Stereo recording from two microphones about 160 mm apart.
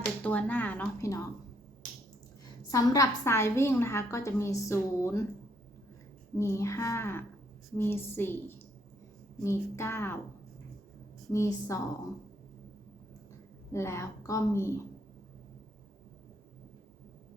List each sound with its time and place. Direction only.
0.2 s a woman's voice: 10° left (ahead or behind)
2.6 s a woman's voice: 20° left (ahead or behind)
6.4 s a woman's voice: 15° left (ahead or behind)
11.3 s a woman's voice: 20° left (ahead or behind)
13.7 s a woman's voice: 15° left (ahead or behind)